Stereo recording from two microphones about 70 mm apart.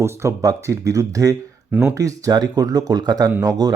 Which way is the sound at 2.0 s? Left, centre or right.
Right.